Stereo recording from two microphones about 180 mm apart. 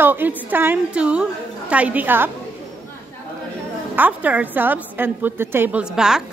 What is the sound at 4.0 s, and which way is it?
Speech, 10° right (ahead or behind).